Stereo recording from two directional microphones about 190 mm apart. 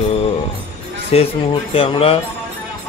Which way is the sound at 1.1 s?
30° left (ahead or behind).